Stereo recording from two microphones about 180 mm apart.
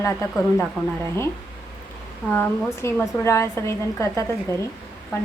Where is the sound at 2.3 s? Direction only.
10° left (ahead or behind).